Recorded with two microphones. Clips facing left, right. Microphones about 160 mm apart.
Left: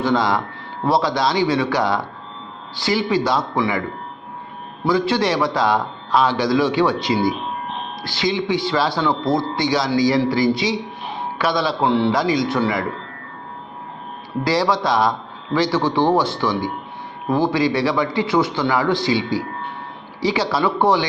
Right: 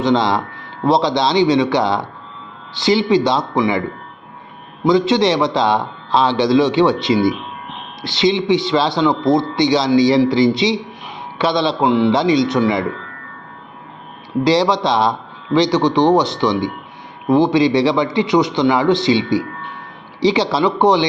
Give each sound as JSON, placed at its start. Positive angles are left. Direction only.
{"t": 0.0, "sound": "a man's voice", "side_deg": -25}
{"t": 14.4, "sound": "a man's voice", "side_deg": -20}
{"t": 20.2, "sound": "a man's voice", "side_deg": -25}